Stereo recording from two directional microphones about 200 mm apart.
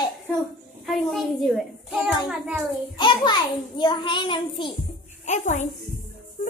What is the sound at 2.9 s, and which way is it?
A child's voice, 25° left (ahead or behind).